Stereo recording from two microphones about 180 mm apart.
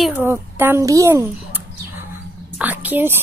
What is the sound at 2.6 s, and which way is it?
Speech, 10° right (ahead or behind).